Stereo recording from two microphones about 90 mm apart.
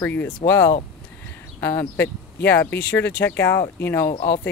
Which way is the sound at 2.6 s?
20° left (ahead or behind).